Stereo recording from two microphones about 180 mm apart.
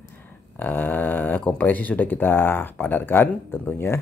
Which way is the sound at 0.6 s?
10° left (ahead or behind).